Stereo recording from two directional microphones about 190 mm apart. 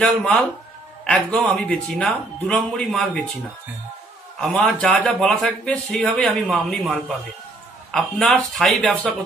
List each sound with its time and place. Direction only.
0.0 s a man's voice: 5° left (ahead or behind)
4.4 s a man's voice: 5° left (ahead or behind)